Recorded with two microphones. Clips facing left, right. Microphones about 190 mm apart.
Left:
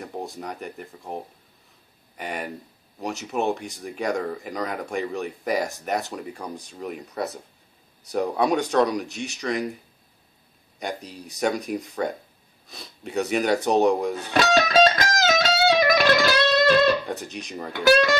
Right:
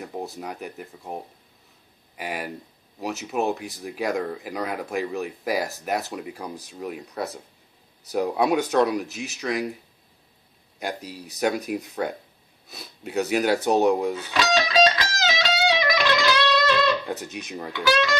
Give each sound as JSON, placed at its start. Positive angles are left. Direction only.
{"t": 0.0, "sound": "speech", "side_deg": 0}
{"t": 10.8, "sound": "speech", "side_deg": 0}
{"t": 14.3, "sound": "music", "side_deg": 50}
{"t": 17.1, "sound": "speech", "side_deg": 0}
{"t": 17.7, "sound": "speech", "side_deg": 50}